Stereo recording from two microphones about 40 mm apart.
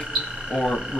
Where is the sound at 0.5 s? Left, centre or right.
Centre.